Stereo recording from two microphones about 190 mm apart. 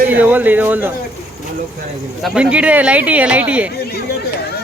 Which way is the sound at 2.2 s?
5° right (ahead or behind).